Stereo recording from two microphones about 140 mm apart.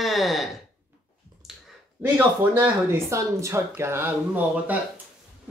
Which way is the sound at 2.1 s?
15° right (ahead or behind).